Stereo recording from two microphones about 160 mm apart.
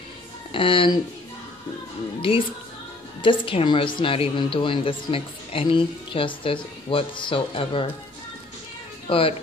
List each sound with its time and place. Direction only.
0.5 s speech: 35° left (ahead or behind)
3.2 s a woman's voice: 30° left (ahead or behind)
9.0 s speech: 35° left (ahead or behind)